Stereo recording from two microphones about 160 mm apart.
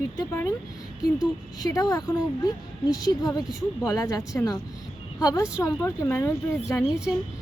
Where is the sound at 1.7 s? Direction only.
20° left (ahead or behind).